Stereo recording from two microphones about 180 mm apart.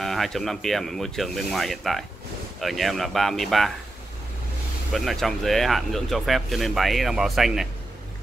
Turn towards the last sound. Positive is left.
turn(degrees=0)  # may be behind; listen again after turning